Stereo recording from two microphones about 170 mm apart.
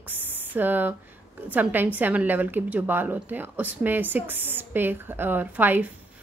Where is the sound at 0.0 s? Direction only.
10° right (ahead or behind).